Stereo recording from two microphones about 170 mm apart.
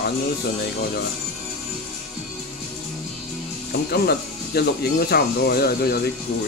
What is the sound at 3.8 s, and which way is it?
Speech, 70° left (ahead or behind).